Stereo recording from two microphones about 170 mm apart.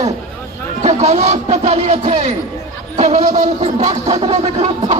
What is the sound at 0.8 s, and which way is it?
Speech, 40° right (ahead or behind).